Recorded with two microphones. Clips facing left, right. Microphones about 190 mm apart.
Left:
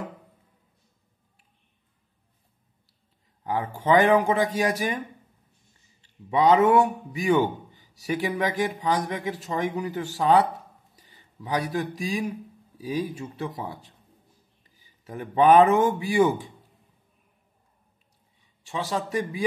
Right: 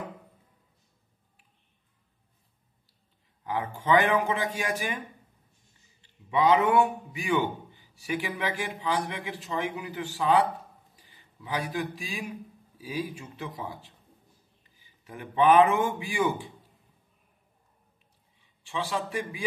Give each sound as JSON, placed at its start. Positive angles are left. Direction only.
{"t": 3.4, "sound": "a man's voice", "side_deg": 35}
{"t": 6.3, "sound": "a man's voice", "side_deg": 40}
{"t": 11.1, "sound": "a sound", "side_deg": 40}
{"t": 12.8, "sound": "a man's voice", "side_deg": 35}
{"t": 15.0, "sound": "a man's voice", "side_deg": 40}
{"t": 18.7, "sound": "a man's voice", "side_deg": 40}